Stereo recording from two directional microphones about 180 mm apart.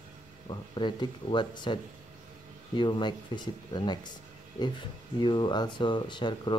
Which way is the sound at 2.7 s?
25° left (ahead or behind).